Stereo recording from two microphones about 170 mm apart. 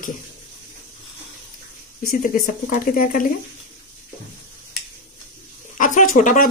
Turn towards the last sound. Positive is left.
turn(degrees=50)  # may be behind; listen again after turning